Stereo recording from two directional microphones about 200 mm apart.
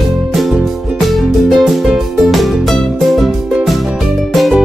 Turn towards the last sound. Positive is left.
turn(degrees=0)  # may be behind; listen again after turning